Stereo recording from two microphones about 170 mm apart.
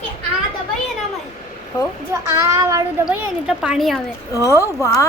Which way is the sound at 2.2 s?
20° right (ahead or behind).